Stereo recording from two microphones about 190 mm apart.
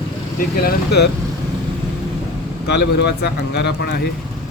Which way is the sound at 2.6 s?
60° left (ahead or behind).